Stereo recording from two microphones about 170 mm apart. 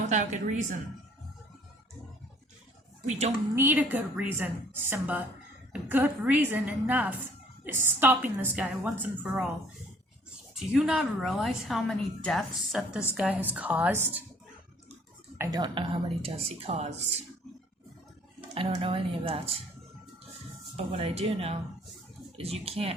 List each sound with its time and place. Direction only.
0.1 s a woman's voice: 45° right (ahead or behind)
3.1 s speech: 40° right (ahead or behind)
3.5 s a woman's voice: 10° right (ahead or behind)
10.5 s a woman's voice: centre (ahead or behind)
15.4 s speech: 25° right (ahead or behind); by 17.0 s 40° right (ahead or behind)
18.5 s speech: 35° right (ahead or behind)
20.7 s speech: 35° right (ahead or behind)